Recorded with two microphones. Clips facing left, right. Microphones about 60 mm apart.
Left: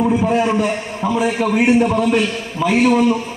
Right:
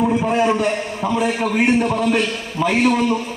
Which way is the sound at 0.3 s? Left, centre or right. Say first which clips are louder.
Left 1 dB; centre.